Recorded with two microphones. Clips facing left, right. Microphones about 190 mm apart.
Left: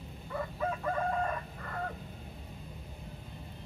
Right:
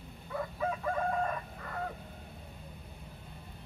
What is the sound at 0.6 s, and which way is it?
Chicken, centre (ahead or behind).